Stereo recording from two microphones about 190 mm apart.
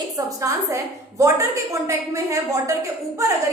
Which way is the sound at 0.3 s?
15° right (ahead or behind).